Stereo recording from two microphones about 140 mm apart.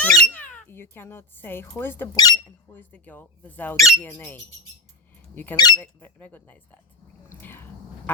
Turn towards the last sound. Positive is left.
turn(degrees=15)  # may be behind; listen again after turning